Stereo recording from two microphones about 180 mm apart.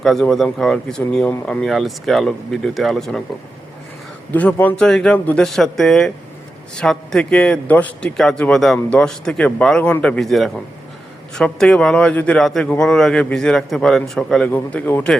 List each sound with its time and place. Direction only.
0.0 s a man's voice: centre (ahead or behind)
4.3 s a man's voice: 10° left (ahead or behind)